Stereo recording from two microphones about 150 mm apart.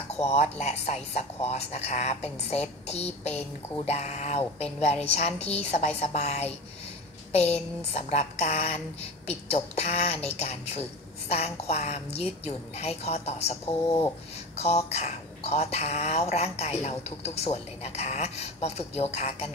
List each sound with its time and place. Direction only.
0.2 s speech: 45° left (ahead or behind)